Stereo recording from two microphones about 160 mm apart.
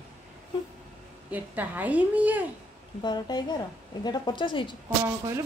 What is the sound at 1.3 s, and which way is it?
A woman's voice, 10° right (ahead or behind).